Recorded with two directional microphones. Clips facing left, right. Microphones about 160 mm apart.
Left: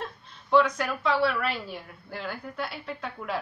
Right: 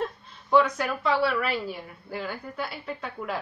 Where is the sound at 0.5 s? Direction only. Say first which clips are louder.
Right 1 dB; centre (ahead or behind).